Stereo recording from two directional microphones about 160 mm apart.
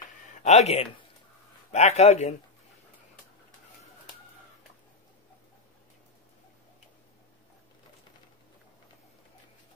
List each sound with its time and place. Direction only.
0.4 s speech: 45° left (ahead or behind)